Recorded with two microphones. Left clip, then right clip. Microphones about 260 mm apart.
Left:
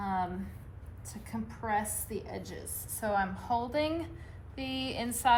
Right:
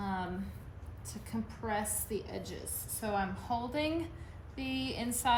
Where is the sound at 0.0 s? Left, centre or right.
Centre.